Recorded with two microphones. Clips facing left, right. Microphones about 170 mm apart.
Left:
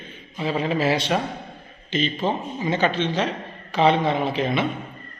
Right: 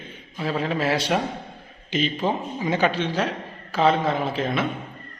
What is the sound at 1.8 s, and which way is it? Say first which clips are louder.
A man's voice: even; 10° right (ahead or behind).